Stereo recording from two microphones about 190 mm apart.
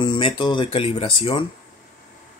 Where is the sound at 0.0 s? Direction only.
25° left (ahead or behind).